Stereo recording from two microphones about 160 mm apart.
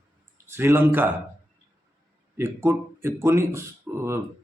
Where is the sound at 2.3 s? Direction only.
15° right (ahead or behind).